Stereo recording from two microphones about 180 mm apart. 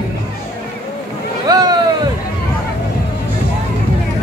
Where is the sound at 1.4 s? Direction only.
20° right (ahead or behind).